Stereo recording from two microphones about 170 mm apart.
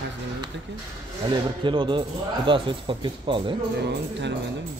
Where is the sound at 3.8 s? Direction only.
90° right.